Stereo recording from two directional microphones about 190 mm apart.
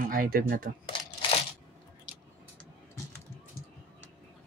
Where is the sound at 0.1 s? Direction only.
50° right (ahead or behind).